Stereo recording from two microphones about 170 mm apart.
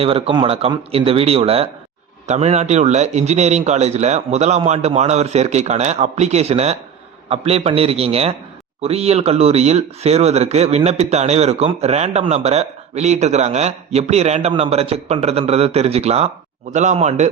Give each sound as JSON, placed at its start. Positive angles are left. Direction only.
{"t": 0.0, "sound": "speech", "side_deg": -35}